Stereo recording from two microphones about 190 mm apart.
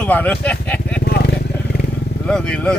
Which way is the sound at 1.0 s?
55° left (ahead or behind).